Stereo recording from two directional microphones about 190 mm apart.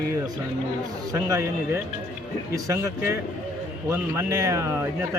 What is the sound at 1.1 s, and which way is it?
Speech, 15° right (ahead or behind).